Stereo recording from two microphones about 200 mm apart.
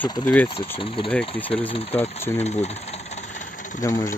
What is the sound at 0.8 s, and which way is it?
Speech, 25° left (ahead or behind).